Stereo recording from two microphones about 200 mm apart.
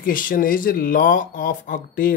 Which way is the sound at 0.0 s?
45° left (ahead or behind).